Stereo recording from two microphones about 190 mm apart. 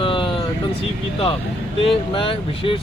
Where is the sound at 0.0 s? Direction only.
25° left (ahead or behind).